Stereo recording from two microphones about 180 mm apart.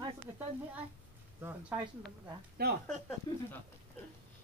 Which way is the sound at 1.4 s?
10° right (ahead or behind).